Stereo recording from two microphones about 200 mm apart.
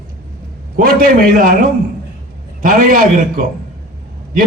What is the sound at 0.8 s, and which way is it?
Speech, 45° right (ahead or behind).